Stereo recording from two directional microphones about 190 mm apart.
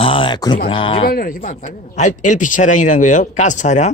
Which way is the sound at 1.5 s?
40° left (ahead or behind).